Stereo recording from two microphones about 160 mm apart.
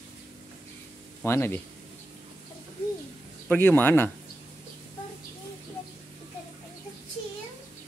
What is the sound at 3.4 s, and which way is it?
Speech, 10° left (ahead or behind).